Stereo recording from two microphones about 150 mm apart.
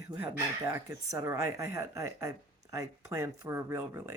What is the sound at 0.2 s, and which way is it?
Speech, 20° right (ahead or behind).